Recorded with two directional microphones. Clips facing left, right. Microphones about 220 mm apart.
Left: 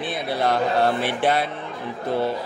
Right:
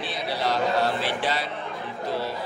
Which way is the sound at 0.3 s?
55° left (ahead or behind).